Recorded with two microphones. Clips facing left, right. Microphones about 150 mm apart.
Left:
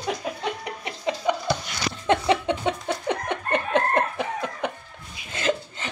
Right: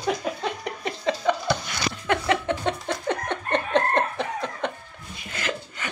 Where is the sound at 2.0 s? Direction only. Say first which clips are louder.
Left 3 dB; 20° left (ahead or behind).